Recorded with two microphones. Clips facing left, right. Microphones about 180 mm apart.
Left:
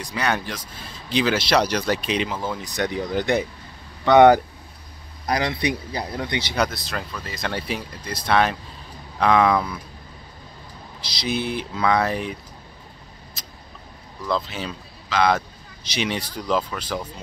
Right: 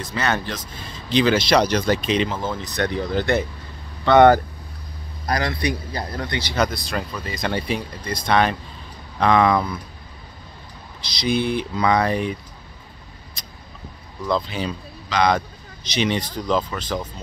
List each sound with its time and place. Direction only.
0.0 s speech: 10° left (ahead or behind)
5.4 s a man's voice: 20° left (ahead or behind)
6.6 s speech: centre (ahead or behind)
11.0 s speech: 5° left (ahead or behind)
13.4 s vehicle: 5° left (ahead or behind)
14.2 s speech: centre (ahead or behind)